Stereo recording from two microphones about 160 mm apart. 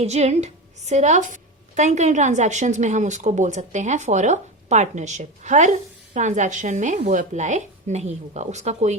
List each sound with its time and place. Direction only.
0.0 s a woman's voice: 45° right (ahead or behind)